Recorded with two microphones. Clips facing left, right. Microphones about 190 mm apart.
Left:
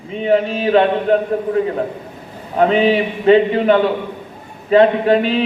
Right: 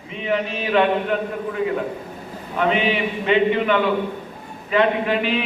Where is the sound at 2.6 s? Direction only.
35° left (ahead or behind).